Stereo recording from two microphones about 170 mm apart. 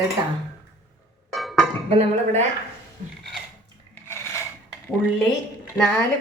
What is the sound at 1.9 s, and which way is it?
Speech, 35° right (ahead or behind).